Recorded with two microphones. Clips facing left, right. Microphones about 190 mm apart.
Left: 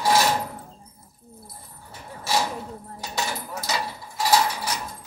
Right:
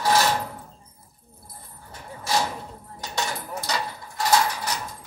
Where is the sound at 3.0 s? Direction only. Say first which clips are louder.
Even; 5° left (ahead or behind).